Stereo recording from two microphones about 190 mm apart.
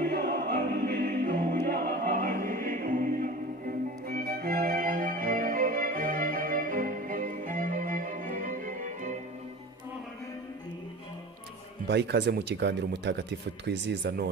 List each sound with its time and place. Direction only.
0.0 s music: 55° right (ahead or behind)
11.9 s speech: 60° right (ahead or behind)